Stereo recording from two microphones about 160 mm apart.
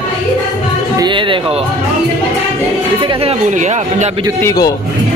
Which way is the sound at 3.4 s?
50° right (ahead or behind).